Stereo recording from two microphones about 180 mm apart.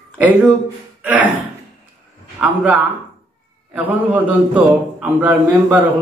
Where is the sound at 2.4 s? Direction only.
5° right (ahead or behind).